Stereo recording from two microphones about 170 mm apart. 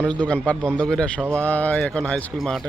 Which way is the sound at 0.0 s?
5° left (ahead or behind).